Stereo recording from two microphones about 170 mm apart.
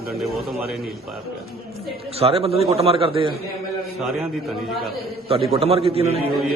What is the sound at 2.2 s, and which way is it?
A man's voice, 35° right (ahead or behind).